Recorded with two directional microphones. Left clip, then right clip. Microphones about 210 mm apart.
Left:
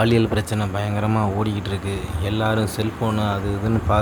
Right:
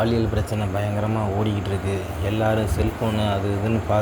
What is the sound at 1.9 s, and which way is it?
Speech, 15° left (ahead or behind).